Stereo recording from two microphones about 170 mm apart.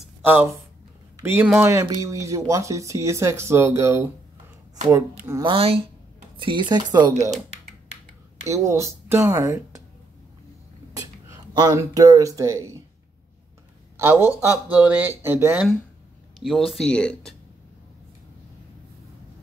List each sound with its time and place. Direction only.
0.2 s speech: 15° right (ahead or behind)
5.4 s speech: 30° right (ahead or behind)
8.5 s speech: 15° right (ahead or behind)
10.9 s a sound: 20° right (ahead or behind)
11.8 s speech: 20° right (ahead or behind)
13.9 s speech: 15° right (ahead or behind); by 17.4 s 5° left (ahead or behind)